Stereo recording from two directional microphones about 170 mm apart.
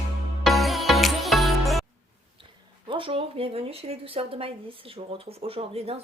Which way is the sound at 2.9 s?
30° right (ahead or behind).